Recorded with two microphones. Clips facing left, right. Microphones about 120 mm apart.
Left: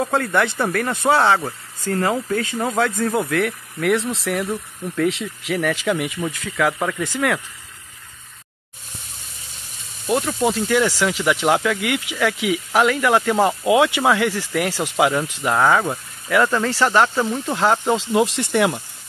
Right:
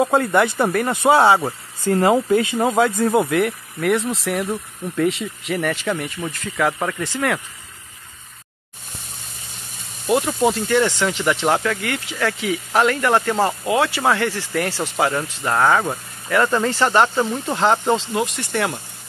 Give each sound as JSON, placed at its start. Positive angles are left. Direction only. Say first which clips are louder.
{"t": 0.0, "sound": "speech", "louder": "right 3 dB", "side_deg": -10}
{"t": 10.0, "sound": "speech", "louder": "right 2 dB", "side_deg": -5}
{"t": 15.5, "sound": "speech", "louder": "even", "side_deg": 0}
{"t": 18.1, "sound": "speech", "louder": "left 5 dB", "side_deg": 25}
{"t": 18.5, "sound": "speech", "louder": "left 3 dB", "side_deg": 10}